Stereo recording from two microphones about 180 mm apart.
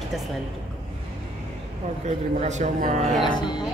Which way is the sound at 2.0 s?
40° right (ahead or behind).